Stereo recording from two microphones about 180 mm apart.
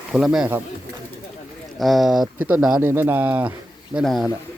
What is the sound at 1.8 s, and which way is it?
Speech, centre (ahead or behind).